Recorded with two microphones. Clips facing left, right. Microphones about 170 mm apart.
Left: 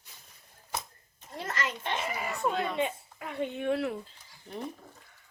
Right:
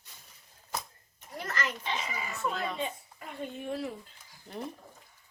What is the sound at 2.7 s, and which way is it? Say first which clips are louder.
A woman's voice: left 5 dB; 75° left (ahead or behind).